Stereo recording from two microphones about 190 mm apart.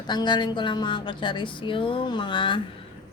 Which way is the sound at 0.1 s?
25° left (ahead or behind).